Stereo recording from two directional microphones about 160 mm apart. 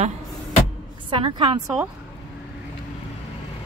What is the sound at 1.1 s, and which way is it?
Speech, 30° right (ahead or behind).